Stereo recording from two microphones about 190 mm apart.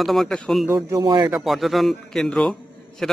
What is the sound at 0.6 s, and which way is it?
Speech, 15° right (ahead or behind).